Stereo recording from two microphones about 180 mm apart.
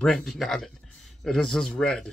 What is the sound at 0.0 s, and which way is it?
Speech, centre (ahead or behind).